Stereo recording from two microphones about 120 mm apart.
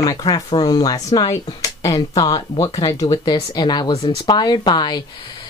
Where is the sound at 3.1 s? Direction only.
40° left (ahead or behind).